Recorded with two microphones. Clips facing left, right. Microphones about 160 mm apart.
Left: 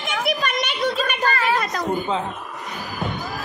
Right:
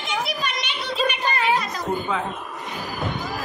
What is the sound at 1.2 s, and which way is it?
Speech, 20° right (ahead or behind).